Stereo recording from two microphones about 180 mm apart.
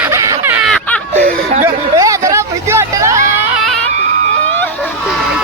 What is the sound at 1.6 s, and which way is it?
Hubbub, 15° right (ahead or behind).